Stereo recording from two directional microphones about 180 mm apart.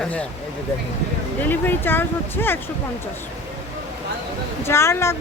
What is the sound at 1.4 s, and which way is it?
Speech, 10° left (ahead or behind).